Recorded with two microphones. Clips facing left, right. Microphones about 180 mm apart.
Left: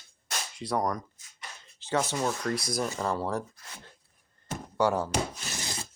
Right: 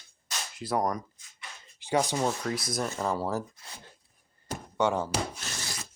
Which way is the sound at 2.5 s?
Centre (ahead or behind).